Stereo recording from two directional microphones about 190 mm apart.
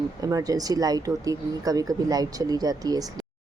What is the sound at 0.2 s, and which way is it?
Speech, 20° right (ahead or behind).